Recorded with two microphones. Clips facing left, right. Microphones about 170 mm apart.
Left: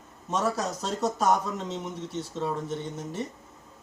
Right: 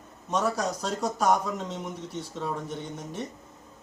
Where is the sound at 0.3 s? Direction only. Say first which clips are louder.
Right 1 dB; 5° left (ahead or behind).